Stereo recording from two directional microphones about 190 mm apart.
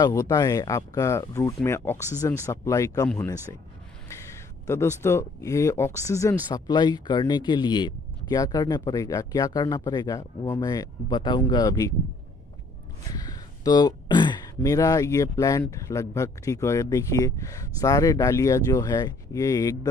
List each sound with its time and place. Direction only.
0.0 s speech: 20° left (ahead or behind)
4.6 s speech: 15° left (ahead or behind)
13.1 s speech: 20° left (ahead or behind)